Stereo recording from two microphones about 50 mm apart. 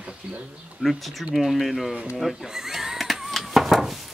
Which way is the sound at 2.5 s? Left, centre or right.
Centre.